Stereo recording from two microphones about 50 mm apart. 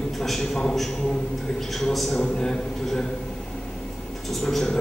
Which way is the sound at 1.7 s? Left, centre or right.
Centre.